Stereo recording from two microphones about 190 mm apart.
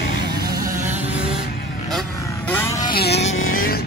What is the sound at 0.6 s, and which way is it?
Vehicle, 45° right (ahead or behind).